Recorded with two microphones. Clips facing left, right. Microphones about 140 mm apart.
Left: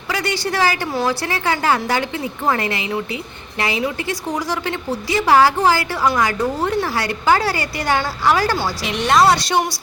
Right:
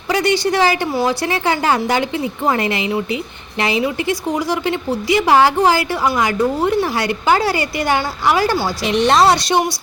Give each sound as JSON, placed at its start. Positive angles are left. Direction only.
{"t": 0.1, "sound": "speech", "side_deg": -20}
{"t": 4.3, "sound": "a woman's voice", "side_deg": -10}
{"t": 8.8, "sound": "speech", "side_deg": -30}